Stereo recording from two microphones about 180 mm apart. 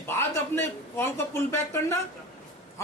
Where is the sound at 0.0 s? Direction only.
15° left (ahead or behind).